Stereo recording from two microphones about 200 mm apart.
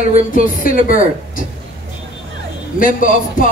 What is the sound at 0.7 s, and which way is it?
Speech, 45° left (ahead or behind).